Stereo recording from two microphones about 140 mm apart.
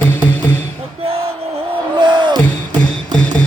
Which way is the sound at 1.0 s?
45° right (ahead or behind).